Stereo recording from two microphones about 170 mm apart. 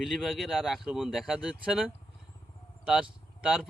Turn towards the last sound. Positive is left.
turn(degrees=-5)  # may be behind; listen again after turning